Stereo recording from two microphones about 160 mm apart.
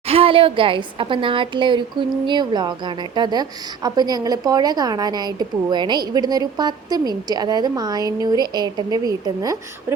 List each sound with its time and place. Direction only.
0.1 s a woman's voice: 35° right (ahead or behind)